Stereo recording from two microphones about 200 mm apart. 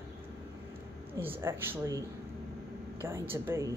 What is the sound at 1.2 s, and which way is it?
Speech, 10° right (ahead or behind).